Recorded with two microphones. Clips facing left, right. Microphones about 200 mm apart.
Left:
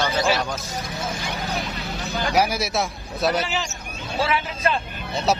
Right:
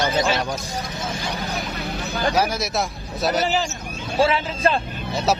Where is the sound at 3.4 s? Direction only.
40° right (ahead or behind).